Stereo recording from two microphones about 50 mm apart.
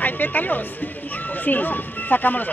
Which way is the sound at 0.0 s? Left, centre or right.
Left.